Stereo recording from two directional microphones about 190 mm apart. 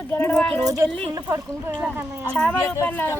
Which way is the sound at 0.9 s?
25° right (ahead or behind).